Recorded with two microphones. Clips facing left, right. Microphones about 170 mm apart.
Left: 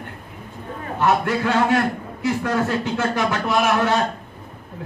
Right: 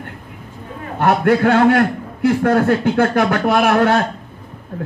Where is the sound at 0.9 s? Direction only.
55° right (ahead or behind).